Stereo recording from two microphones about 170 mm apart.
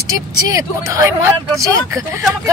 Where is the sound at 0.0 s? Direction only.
20° right (ahead or behind).